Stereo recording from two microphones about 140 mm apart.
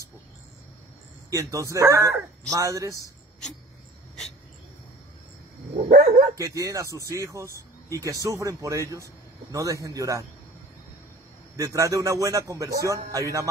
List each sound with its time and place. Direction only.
1.3 s speech: 25° right (ahead or behind)
5.9 s speech: 90° right
6.3 s speech: 25° right (ahead or behind)
11.5 s speech: 25° right (ahead or behind)